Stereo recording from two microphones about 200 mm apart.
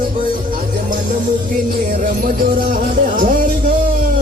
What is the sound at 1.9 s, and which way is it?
Music, 45° right (ahead or behind).